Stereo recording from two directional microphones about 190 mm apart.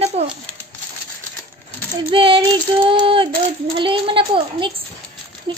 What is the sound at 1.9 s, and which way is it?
A child's voice, 25° right (ahead or behind).